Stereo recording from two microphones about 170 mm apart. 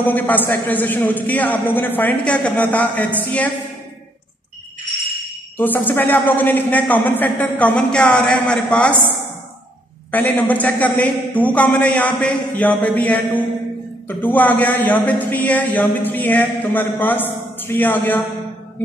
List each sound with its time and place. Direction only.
0.0 s speech: 10° left (ahead or behind)
5.6 s speech: 10° left (ahead or behind)
10.1 s speech: 10° left (ahead or behind)